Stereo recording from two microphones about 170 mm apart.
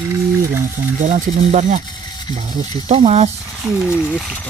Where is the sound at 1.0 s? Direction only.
45° right (ahead or behind).